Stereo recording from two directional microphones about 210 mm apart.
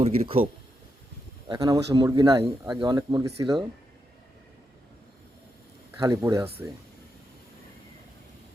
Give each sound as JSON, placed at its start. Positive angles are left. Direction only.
{"t": 0.0, "sound": "a man's voice", "side_deg": -30}
{"t": 1.5, "sound": "a man's voice", "side_deg": -20}
{"t": 6.0, "sound": "speech", "side_deg": -15}